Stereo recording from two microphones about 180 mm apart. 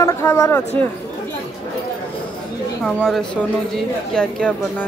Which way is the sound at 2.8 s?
5° left (ahead or behind).